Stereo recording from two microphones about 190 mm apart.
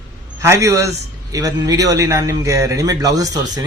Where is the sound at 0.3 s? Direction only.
15° right (ahead or behind).